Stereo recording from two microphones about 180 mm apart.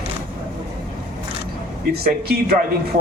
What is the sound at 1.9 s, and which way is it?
Speech, 60° right (ahead or behind).